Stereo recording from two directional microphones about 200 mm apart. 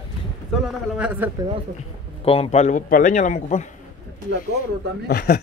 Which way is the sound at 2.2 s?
30° left (ahead or behind).